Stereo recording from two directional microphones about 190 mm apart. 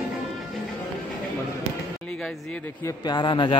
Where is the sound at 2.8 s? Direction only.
20° left (ahead or behind).